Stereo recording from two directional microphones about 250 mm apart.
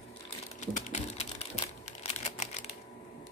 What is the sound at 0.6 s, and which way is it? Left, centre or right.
Typing, left.